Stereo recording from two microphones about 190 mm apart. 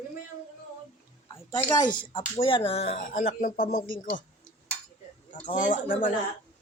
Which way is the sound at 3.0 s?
45° left (ahead or behind).